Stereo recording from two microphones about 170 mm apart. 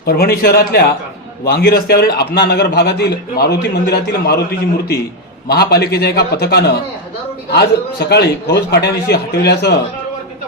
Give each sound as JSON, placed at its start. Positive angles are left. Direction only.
{"t": 0.0, "sound": "a man's voice", "side_deg": 65}
{"t": 2.1, "sound": "a man's voice", "side_deg": 80}
{"t": 5.5, "sound": "a man's voice", "side_deg": 70}